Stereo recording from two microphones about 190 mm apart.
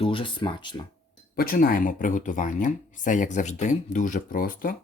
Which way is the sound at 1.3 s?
50° left (ahead or behind).